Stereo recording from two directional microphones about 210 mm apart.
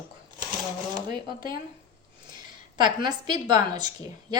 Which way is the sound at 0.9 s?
20° right (ahead or behind).